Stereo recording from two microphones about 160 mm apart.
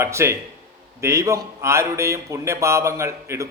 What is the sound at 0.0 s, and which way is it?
A man's voice, 15° right (ahead or behind).